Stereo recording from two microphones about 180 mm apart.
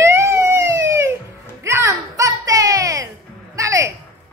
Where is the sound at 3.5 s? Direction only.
20° right (ahead or behind).